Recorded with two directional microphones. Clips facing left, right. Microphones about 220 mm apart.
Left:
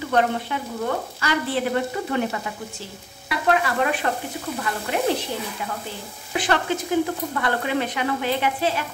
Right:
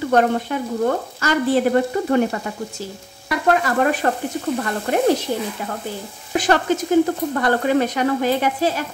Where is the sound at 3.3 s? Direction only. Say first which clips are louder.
Right 3 dB; 45° right (ahead or behind).